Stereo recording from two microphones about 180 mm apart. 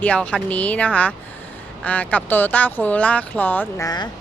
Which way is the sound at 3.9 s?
25° left (ahead or behind).